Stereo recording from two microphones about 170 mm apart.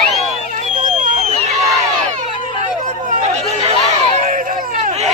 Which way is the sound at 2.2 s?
45° right (ahead or behind).